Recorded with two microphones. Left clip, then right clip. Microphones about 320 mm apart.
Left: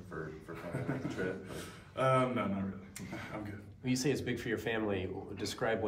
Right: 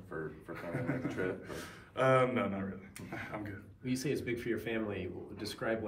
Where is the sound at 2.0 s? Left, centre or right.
Centre.